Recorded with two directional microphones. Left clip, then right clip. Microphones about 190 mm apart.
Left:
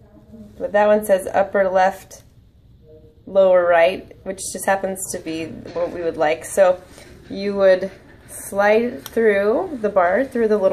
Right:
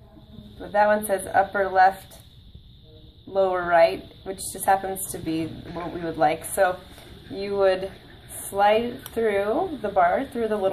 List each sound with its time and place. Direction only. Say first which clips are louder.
0.6 s a woman's voice: left 5 dB; 25° left (ahead or behind)
3.4 s a woman's voice: left 5 dB; 30° left (ahead or behind)